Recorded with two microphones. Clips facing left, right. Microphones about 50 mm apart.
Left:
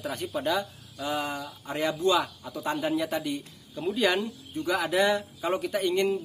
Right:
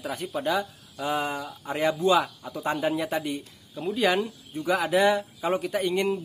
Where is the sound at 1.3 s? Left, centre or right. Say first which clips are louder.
Right 2 dB; centre.